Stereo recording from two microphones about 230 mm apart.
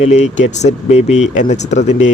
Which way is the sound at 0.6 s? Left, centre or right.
Left.